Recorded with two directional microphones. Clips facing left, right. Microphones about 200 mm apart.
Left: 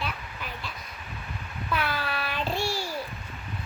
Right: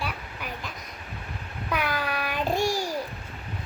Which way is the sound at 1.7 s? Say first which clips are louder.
Right 2 dB; 15° right (ahead or behind).